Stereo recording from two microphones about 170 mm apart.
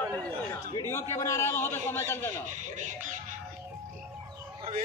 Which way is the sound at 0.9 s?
15° left (ahead or behind).